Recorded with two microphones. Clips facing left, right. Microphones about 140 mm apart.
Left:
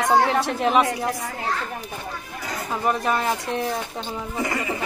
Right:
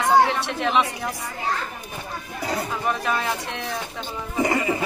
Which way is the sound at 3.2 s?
40° left (ahead or behind).